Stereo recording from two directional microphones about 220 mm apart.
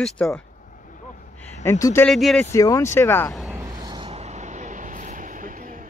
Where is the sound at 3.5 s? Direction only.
15° right (ahead or behind).